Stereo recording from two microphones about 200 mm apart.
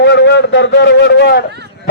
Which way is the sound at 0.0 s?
60° left (ahead or behind).